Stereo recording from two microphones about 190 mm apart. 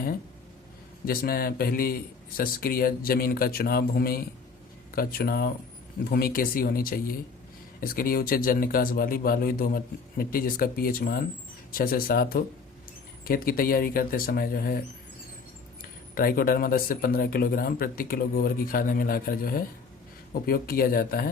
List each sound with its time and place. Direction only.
1.0 s speech: 50° left (ahead or behind)
15.8 s speech: 50° left (ahead or behind)